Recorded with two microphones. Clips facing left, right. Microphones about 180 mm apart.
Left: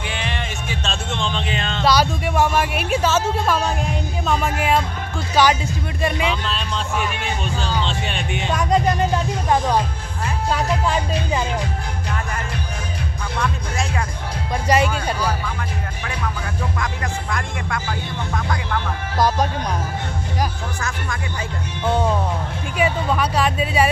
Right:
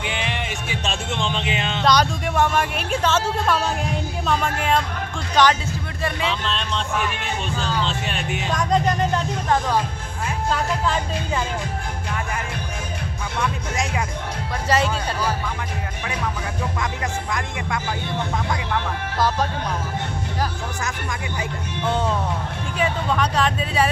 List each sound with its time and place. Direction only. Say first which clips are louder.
0.0 s music: even; 15° right (ahead or behind)
1.8 s speech: left 1 dB; 5° left (ahead or behind)
6.4 s speech: even; centre (ahead or behind)
13.4 s speech: even; 15° right (ahead or behind)
14.7 s speech: left 3 dB; 15° left (ahead or behind)
16.8 s speech: even; 20° right (ahead or behind)
19.1 s speech: left 3 dB; 15° left (ahead or behind)
22.8 s speech: left 2 dB; 10° left (ahead or behind)